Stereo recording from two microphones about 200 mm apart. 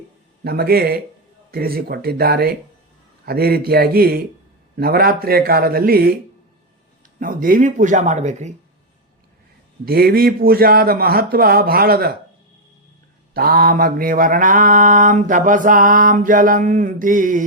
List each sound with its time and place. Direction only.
0.4 s speech: 50° right (ahead or behind)
7.2 s mantra: 45° right (ahead or behind)
9.8 s speech: 50° right (ahead or behind)
13.3 s mantra: 50° right (ahead or behind)